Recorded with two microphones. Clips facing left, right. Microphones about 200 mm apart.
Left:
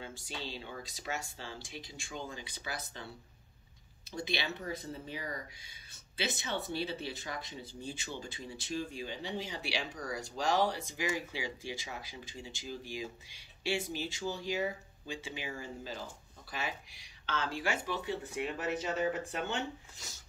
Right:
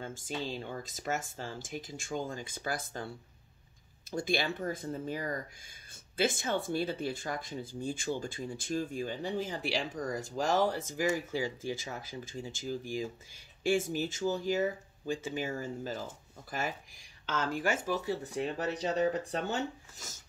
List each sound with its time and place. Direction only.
0.0 s speech: 50° right (ahead or behind)
4.1 s speech: 50° right (ahead or behind)